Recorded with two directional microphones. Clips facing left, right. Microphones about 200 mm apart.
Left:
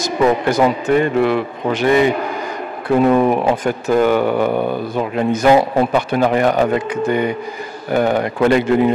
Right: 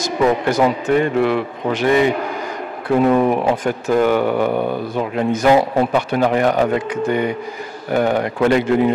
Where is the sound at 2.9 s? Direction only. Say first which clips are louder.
Left 1 dB; 25° left (ahead or behind).